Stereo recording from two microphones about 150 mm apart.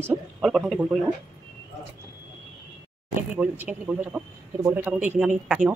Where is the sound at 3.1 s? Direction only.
10° right (ahead or behind).